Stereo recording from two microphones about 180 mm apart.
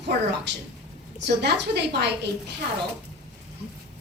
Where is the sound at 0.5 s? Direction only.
75° right (ahead or behind).